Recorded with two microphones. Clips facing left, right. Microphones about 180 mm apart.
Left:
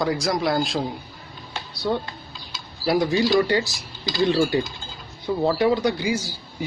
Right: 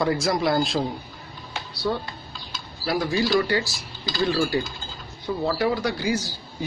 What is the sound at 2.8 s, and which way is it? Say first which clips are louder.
Speech: left 3 dB; 20° left (ahead or behind).